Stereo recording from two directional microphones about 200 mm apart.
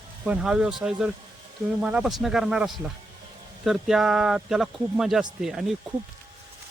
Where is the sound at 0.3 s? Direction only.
5° right (ahead or behind).